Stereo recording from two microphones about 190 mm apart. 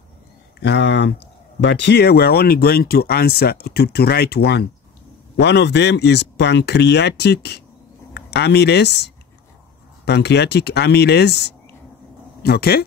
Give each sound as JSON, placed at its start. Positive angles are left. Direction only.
{"t": 0.6, "sound": "speech", "side_deg": 65}